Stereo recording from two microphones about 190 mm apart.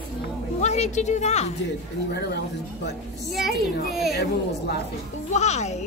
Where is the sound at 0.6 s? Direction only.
35° left (ahead or behind).